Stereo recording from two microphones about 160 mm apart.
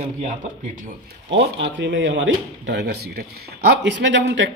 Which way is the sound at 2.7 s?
90° right.